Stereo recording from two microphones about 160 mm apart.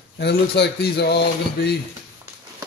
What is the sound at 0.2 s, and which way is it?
A man's voice, 90° left.